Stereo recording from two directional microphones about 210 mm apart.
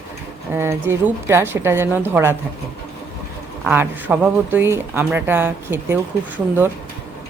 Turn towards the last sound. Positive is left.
turn(degrees=-10)  # may be behind; listen again after turning